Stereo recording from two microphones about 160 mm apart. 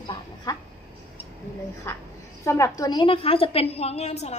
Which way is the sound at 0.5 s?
20° left (ahead or behind).